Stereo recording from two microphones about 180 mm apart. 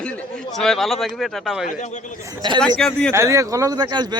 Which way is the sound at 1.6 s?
40° left (ahead or behind).